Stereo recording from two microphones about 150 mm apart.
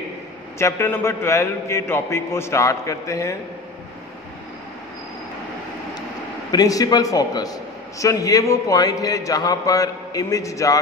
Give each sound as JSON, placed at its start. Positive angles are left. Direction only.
{"t": 0.6, "sound": "a man's voice", "side_deg": 15}
{"t": 6.5, "sound": "a man's voice", "side_deg": 25}